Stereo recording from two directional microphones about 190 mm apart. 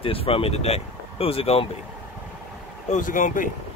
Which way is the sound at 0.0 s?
30° left (ahead or behind).